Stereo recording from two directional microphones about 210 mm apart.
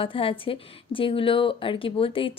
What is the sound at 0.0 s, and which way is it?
A woman's voice, 25° left (ahead or behind).